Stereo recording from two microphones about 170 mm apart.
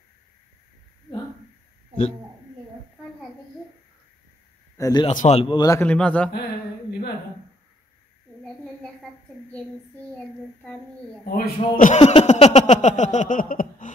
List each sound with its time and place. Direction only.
4.7 s speech: 20° left (ahead or behind)
5.1 s speech: 40° left (ahead or behind); by 5.9 s 20° left (ahead or behind)
5.9 s child singing: 5° left (ahead or behind)
10.1 s child singing: 5° left (ahead or behind)
11.2 s a man's voice: 60° left (ahead or behind)